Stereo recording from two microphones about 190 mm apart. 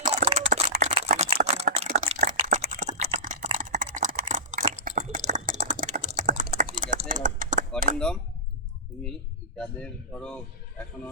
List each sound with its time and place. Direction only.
0.0 s typing: 35° right (ahead or behind)
0.8 s a sound: 35° right (ahead or behind)
2.0 s typing: 40° right (ahead or behind)
4.2 s a sound: 45° right (ahead or behind)
5.6 s typing: 40° right (ahead or behind)
7.9 s speech: 5° left (ahead or behind)
9.6 s speech: 5° left (ahead or behind)